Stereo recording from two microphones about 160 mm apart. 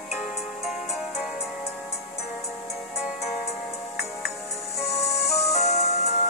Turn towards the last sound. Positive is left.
turn(degrees=40)  # may be behind; listen again after turning